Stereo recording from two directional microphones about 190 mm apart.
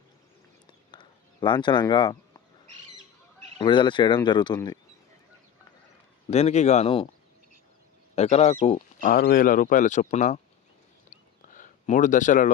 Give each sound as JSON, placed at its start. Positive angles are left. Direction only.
{"t": 0.7, "sound": "a sound", "side_deg": 25}
{"t": 3.6, "sound": "speech", "side_deg": 25}
{"t": 6.3, "sound": "speech", "side_deg": 35}
{"t": 8.1, "sound": "speech", "side_deg": 35}
{"t": 9.1, "sound": "speech", "side_deg": 50}
{"t": 11.4, "sound": "a sound", "side_deg": 45}